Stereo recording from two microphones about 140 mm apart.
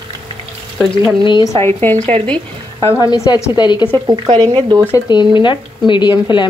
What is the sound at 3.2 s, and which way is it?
Speech, 25° left (ahead or behind).